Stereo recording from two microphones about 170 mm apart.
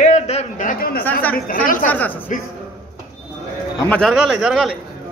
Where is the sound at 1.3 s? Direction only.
55° left (ahead or behind).